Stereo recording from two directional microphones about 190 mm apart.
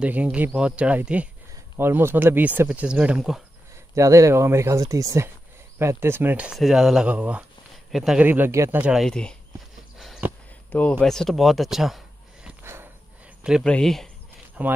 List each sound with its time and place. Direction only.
0.0 s speech: 5° right (ahead or behind)
3.9 s speech: 15° right (ahead or behind); by 9.4 s 5° left (ahead or behind)
9.9 s a sound: centre (ahead or behind)
10.7 s speech: 5° left (ahead or behind)
12.4 s a sound: 10° right (ahead or behind)
13.4 s speech: centre (ahead or behind)
14.6 s speech: 5° right (ahead or behind)